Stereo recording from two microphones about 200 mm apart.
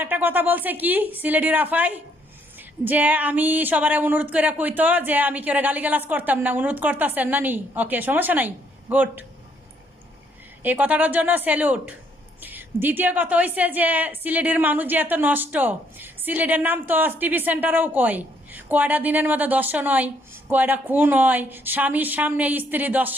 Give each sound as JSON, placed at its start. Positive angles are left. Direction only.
{"t": 0.0, "sound": "a woman's voice", "side_deg": -10}
{"t": 10.6, "sound": "a woman's voice", "side_deg": -10}